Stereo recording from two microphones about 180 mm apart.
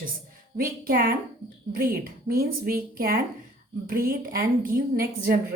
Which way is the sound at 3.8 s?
55° right (ahead or behind).